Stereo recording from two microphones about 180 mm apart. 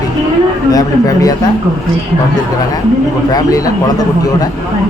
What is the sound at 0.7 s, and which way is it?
Speech, 20° left (ahead or behind).